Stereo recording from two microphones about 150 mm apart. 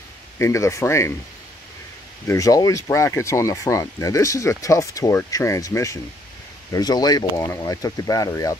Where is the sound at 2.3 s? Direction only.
25° left (ahead or behind).